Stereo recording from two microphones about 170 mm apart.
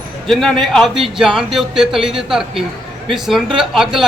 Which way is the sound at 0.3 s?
Centre (ahead or behind).